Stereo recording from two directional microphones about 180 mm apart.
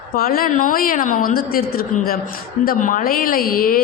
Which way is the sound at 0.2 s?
55° left (ahead or behind).